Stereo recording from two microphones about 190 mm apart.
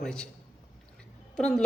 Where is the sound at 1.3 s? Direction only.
5° left (ahead or behind).